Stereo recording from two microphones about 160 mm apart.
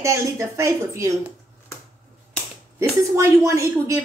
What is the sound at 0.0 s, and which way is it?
Speech, 20° right (ahead or behind).